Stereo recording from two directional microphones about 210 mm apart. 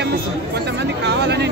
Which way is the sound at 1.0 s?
55° right (ahead or behind).